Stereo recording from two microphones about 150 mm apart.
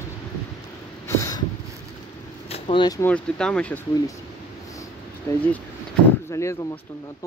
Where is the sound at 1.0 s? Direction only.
20° left (ahead or behind).